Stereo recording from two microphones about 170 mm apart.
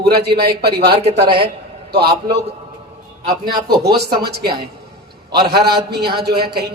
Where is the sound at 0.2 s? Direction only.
75° right (ahead or behind).